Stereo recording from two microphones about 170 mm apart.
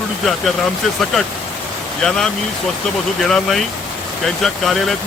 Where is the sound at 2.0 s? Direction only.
5° left (ahead or behind).